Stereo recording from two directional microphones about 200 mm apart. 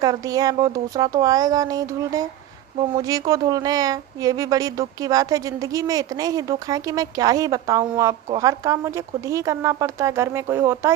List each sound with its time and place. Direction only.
0.0 s speech: 20° right (ahead or behind)